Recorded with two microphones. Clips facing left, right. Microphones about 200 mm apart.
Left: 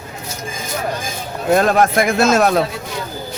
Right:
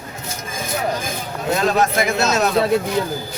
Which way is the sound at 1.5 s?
55° left (ahead or behind).